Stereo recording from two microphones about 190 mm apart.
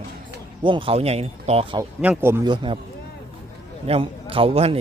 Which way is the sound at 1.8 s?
10° right (ahead or behind).